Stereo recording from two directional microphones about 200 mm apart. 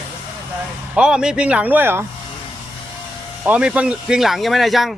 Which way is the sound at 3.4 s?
5° right (ahead or behind).